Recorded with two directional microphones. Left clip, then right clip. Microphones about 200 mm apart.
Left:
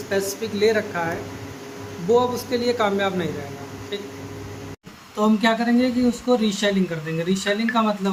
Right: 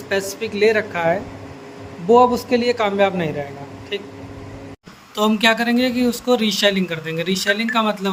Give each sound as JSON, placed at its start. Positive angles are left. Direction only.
{"t": 0.1, "sound": "a man's voice", "side_deg": -30}
{"t": 5.1, "sound": "speech", "side_deg": -45}